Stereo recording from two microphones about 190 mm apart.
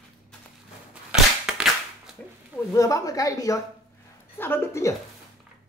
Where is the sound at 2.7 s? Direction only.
15° left (ahead or behind).